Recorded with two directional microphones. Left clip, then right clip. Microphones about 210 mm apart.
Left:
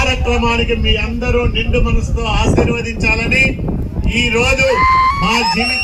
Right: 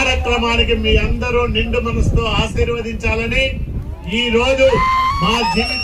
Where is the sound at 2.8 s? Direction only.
45° right (ahead or behind).